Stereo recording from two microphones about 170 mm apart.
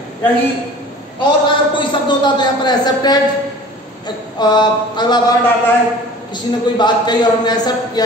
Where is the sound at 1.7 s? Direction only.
25° left (ahead or behind).